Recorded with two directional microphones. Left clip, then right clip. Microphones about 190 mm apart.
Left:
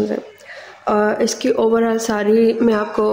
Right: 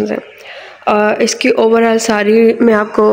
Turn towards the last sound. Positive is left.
turn(degrees=-35)  # may be behind; listen again after turning